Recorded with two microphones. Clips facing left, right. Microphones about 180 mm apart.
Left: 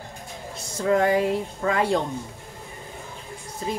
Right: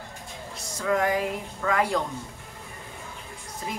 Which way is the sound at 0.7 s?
30° left (ahead or behind).